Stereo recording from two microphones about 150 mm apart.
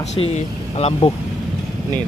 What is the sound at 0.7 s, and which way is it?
Speech, 40° left (ahead or behind).